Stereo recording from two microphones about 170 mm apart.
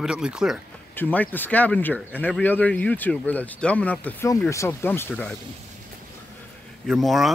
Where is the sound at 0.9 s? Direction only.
10° left (ahead or behind).